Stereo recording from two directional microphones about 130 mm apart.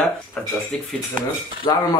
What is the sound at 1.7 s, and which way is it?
Speech, 35° left (ahead or behind).